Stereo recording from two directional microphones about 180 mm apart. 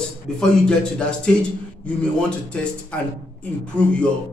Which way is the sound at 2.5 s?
5° left (ahead or behind).